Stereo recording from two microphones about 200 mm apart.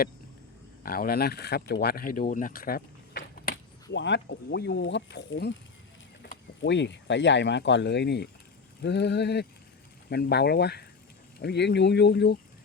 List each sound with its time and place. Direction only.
0.8 s speech: 50° left (ahead or behind)